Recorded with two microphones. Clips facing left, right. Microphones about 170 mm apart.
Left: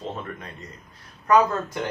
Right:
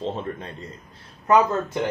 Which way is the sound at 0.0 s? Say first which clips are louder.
Right 4 dB; 30° right (ahead or behind).